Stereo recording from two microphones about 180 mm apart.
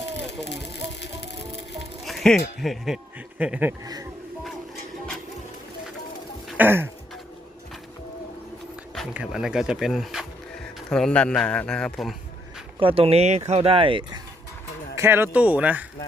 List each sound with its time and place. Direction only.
2.0 s music: centre (ahead or behind)
2.6 s speech: centre (ahead or behind)
6.6 s speech: 15° right (ahead or behind)
9.0 s a man's voice: 5° right (ahead or behind)
12.8 s speech: 30° right (ahead or behind)
14.9 s speech: 15° right (ahead or behind)